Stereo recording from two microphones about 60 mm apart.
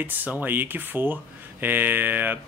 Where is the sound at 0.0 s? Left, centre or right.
Right.